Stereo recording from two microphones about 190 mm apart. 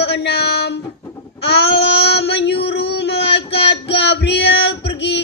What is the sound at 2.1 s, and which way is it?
Child singing, 60° left (ahead or behind).